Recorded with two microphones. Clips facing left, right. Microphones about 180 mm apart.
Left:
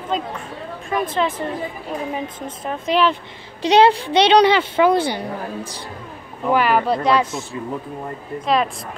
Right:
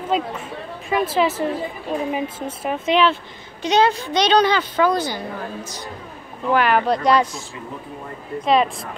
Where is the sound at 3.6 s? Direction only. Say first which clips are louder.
Left 4 dB; 30° left (ahead or behind).